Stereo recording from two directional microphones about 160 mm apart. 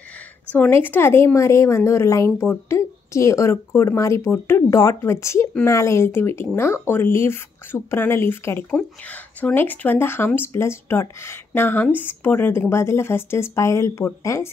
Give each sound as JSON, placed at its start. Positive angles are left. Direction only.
{"t": 0.5, "sound": "speech", "side_deg": 15}